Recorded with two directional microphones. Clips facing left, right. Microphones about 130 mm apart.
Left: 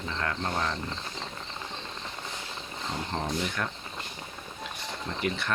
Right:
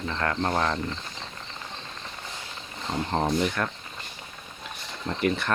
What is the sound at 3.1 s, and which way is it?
Speech, 55° right (ahead or behind).